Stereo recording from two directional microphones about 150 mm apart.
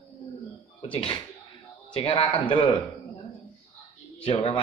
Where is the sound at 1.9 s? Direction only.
35° left (ahead or behind).